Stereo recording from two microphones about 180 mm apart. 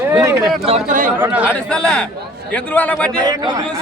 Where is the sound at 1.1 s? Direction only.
10° right (ahead or behind).